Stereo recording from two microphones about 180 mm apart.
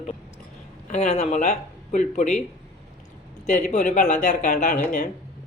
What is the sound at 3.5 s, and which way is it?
Speech, 45° left (ahead or behind).